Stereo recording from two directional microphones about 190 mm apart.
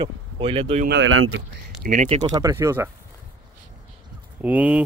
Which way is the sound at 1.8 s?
40° right (ahead or behind).